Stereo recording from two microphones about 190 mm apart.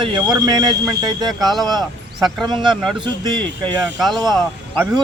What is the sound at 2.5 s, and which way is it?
Speech, 25° right (ahead or behind).